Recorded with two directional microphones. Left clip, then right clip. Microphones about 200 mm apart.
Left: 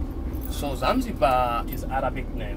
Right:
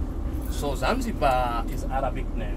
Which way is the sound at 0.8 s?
15° left (ahead or behind).